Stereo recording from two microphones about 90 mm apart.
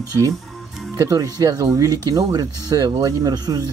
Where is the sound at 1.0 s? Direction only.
40° right (ahead or behind).